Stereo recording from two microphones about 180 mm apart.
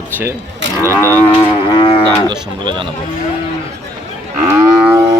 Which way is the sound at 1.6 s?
30° left (ahead or behind).